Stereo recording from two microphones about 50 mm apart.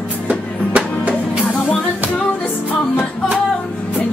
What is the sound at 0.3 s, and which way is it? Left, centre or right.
Music, right.